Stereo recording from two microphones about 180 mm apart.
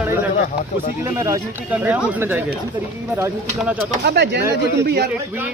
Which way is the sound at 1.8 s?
5° right (ahead or behind).